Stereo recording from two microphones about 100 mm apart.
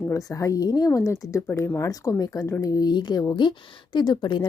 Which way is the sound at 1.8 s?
35° left (ahead or behind).